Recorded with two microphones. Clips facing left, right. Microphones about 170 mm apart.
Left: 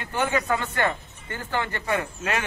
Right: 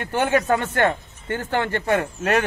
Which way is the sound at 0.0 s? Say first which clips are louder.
Right 4 dB; 65° right (ahead or behind).